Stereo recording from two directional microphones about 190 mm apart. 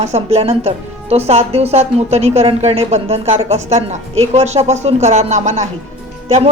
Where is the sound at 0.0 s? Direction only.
35° right (ahead or behind).